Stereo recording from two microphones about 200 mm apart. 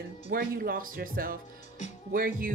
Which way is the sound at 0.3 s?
45° right (ahead or behind).